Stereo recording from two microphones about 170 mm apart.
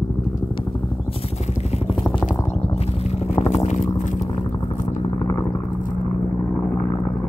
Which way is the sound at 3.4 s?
40° left (ahead or behind).